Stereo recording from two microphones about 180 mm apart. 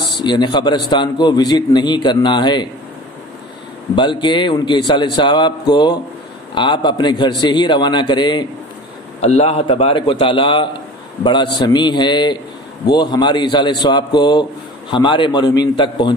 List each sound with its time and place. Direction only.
0.2 s a man's voice: 25° left (ahead or behind)
3.9 s a man's voice: 25° left (ahead or behind)
9.2 s a man's voice: 35° left (ahead or behind)